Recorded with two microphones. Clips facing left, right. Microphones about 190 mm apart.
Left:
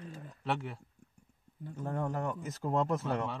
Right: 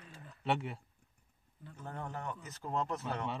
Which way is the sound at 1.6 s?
45° left (ahead or behind).